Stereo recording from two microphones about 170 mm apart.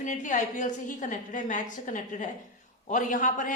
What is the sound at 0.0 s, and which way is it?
A man's voice, 50° left (ahead or behind).